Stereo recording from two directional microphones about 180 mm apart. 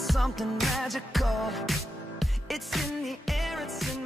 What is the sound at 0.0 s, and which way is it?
Music, centre (ahead or behind).